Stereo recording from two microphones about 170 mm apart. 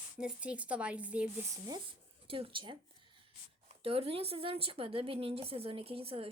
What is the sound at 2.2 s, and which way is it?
Speech, 30° right (ahead or behind).